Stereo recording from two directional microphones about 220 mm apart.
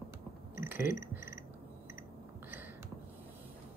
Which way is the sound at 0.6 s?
10° right (ahead or behind).